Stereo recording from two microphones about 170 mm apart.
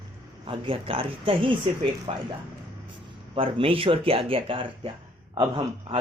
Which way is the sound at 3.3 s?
30° right (ahead or behind).